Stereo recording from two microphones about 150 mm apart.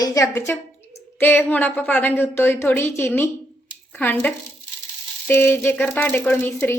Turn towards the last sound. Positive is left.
turn(degrees=15)  # may be behind; listen again after turning